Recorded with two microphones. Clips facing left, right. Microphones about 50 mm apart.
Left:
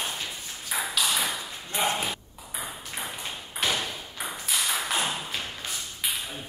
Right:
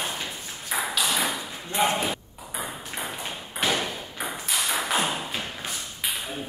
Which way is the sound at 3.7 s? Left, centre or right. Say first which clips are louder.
Right 3 dB; right.